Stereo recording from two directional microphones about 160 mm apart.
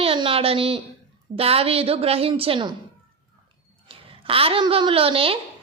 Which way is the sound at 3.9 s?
35° right (ahead or behind).